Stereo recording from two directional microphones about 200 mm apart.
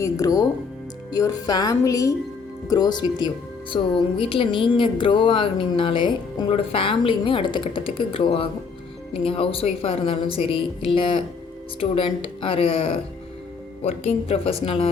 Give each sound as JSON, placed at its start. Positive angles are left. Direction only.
{"t": 0.0, "sound": "a woman's voice", "side_deg": 15}